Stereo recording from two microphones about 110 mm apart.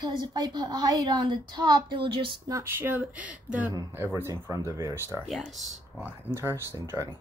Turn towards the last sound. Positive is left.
turn(degrees=-20)  # may be behind; listen again after turning